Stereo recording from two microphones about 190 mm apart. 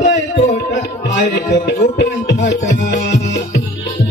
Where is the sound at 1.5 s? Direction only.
65° left (ahead or behind).